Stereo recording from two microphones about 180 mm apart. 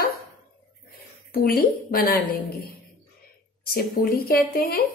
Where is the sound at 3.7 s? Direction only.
55° left (ahead or behind).